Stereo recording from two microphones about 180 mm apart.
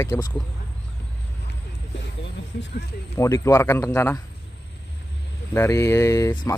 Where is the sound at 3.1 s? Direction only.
15° left (ahead or behind).